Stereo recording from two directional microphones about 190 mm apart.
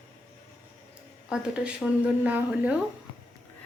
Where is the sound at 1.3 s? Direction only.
5° right (ahead or behind).